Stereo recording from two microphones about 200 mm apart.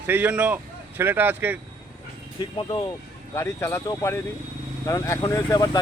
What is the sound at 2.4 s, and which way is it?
Speech, 20° left (ahead or behind).